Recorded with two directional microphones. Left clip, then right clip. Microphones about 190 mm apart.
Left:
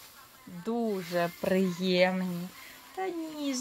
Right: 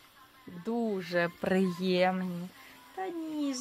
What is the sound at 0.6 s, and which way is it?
Speech, 15° right (ahead or behind).